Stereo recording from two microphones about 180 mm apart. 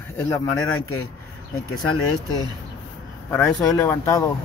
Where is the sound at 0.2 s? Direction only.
15° left (ahead or behind).